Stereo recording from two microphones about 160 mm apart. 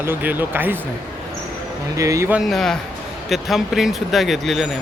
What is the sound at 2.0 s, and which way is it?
Speech, 20° right (ahead or behind).